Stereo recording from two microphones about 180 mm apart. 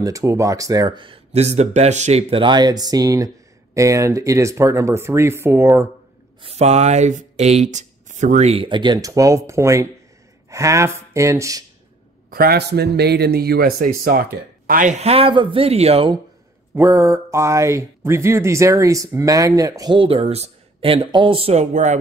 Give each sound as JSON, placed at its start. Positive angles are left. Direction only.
{"t": 0.0, "sound": "speech", "side_deg": -15}
{"t": 6.4, "sound": "speech", "side_deg": -35}
{"t": 12.3, "sound": "a man's voice", "side_deg": -55}
{"t": 16.7, "sound": "speech", "side_deg": -15}